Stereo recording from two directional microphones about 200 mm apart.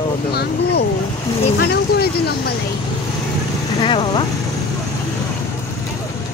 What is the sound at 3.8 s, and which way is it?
Speech, 25° left (ahead or behind).